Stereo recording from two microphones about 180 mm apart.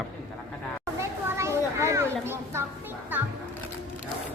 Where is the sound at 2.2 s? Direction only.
15° right (ahead or behind).